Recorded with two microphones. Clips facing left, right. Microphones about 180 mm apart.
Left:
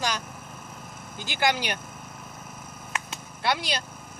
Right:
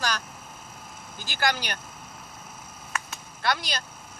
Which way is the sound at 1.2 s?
25° left (ahead or behind).